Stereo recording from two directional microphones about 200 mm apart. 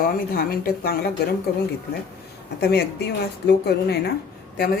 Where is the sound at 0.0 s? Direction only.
45° left (ahead or behind).